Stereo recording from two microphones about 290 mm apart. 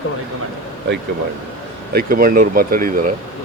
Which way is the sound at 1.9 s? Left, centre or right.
Right.